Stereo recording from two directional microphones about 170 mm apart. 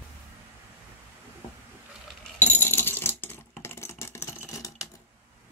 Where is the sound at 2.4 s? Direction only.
15° left (ahead or behind).